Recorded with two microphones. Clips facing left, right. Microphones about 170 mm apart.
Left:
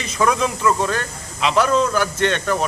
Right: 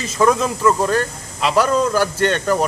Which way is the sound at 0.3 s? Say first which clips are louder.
Right 2 dB; centre (ahead or behind).